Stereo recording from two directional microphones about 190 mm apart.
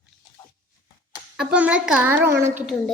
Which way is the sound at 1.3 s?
5° right (ahead or behind).